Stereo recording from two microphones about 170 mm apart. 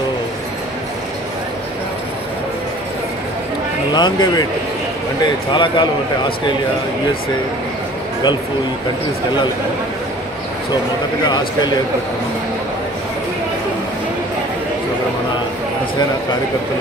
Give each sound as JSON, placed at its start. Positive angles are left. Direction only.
{"t": 3.9, "sound": "speech", "side_deg": 25}
{"t": 11.2, "sound": "speech", "side_deg": 25}